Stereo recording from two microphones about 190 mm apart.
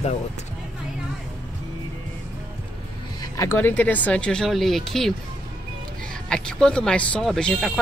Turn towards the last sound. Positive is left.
turn(degrees=5)  # may be behind; listen again after turning